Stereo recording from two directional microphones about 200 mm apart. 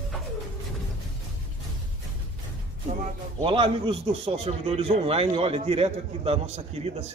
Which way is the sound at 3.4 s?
25° right (ahead or behind).